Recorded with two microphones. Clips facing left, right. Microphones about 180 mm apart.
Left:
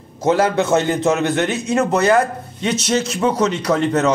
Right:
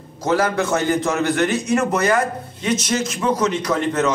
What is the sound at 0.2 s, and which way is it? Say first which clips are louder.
A man's voice: left 3 dB; 25° left (ahead or behind).